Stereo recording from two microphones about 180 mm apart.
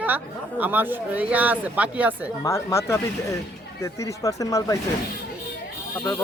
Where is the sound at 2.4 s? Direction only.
15° left (ahead or behind).